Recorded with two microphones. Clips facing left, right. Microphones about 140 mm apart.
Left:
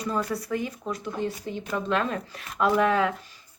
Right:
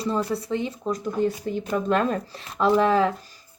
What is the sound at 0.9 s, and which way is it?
Speech, 45° right (ahead or behind).